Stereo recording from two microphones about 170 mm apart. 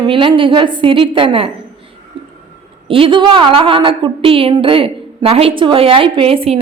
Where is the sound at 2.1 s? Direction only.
30° right (ahead or behind).